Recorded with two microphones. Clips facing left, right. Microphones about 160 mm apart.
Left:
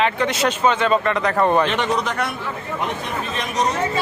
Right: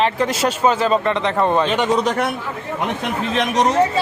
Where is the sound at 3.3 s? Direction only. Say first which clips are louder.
Right 6 dB; 90° right.